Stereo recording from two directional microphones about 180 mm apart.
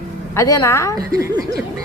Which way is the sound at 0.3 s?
20° left (ahead or behind).